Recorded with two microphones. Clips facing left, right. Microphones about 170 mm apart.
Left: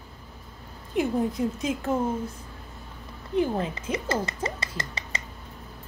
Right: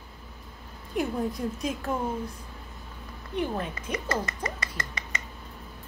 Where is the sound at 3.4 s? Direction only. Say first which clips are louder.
Left 4 dB; 25° left (ahead or behind).